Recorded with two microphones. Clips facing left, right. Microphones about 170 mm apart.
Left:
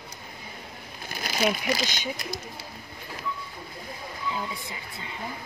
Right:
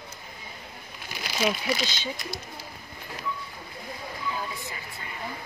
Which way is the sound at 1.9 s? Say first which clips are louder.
Left 1 dB; 15° left (ahead or behind).